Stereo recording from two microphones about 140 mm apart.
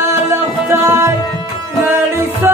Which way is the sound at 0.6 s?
20° right (ahead or behind).